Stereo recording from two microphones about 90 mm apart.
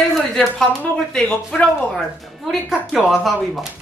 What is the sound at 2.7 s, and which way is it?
Speech, 5° right (ahead or behind).